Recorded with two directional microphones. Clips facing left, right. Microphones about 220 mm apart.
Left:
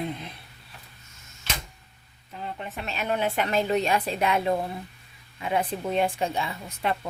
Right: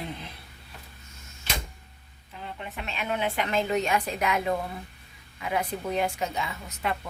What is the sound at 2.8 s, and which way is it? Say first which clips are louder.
A woman's voice: left 2 dB; 40° left (ahead or behind).